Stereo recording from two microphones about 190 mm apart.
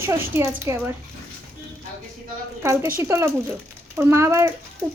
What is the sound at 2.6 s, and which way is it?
A woman's voice, 15° right (ahead or behind).